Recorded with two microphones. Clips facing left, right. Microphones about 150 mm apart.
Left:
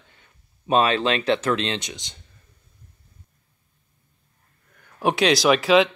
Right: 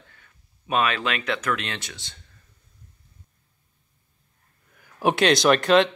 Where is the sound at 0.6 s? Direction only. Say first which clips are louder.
Left 5 dB; 30° left (ahead or behind).